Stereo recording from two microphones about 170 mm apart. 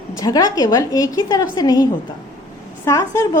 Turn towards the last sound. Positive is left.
turn(degrees=20)  # may be behind; listen again after turning